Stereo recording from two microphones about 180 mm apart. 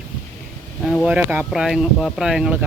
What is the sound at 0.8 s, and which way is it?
Speech, 5° right (ahead or behind).